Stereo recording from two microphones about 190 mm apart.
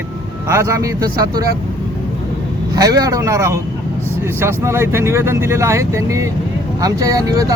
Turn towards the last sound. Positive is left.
turn(degrees=-20)  # may be behind; listen again after turning